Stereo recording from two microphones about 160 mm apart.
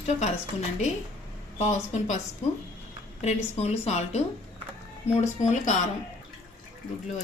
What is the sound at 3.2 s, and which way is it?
A woman's voice, 45° left (ahead or behind).